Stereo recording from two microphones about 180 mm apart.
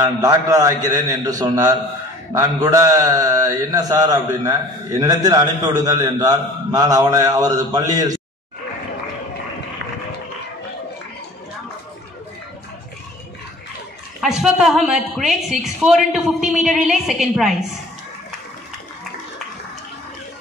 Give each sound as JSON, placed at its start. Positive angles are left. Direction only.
{"t": 0.0, "sound": "a man's voice", "side_deg": -20}
{"t": 14.2, "sound": "a woman's voice", "side_deg": 0}